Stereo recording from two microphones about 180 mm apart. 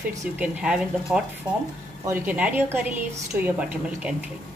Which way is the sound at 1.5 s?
20° right (ahead or behind).